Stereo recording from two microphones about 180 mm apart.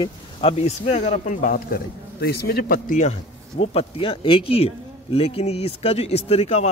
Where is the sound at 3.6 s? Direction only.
35° left (ahead or behind).